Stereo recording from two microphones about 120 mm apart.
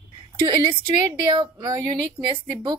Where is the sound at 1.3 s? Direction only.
35° right (ahead or behind).